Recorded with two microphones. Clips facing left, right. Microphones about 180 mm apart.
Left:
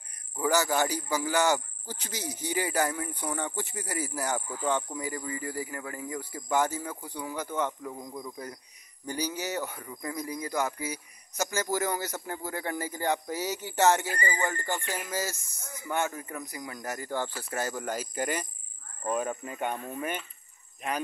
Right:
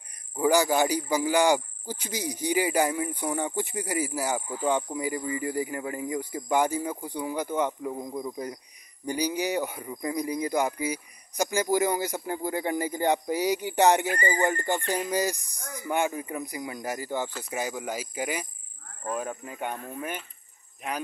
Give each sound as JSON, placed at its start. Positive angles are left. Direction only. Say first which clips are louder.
{"t": 0.4, "sound": "speech", "louder": "right 4 dB", "side_deg": -15}
{"t": 14.1, "sound": "speech", "louder": "right 5 dB", "side_deg": -30}
{"t": 14.4, "sound": "speech", "louder": "right 5 dB", "side_deg": -20}